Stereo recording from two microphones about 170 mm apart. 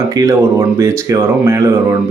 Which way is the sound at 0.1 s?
20° right (ahead or behind).